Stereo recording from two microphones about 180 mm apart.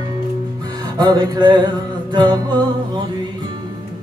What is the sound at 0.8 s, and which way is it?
Music, 20° right (ahead or behind).